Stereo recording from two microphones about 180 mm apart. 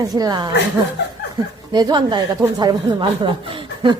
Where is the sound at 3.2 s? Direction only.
25° right (ahead or behind).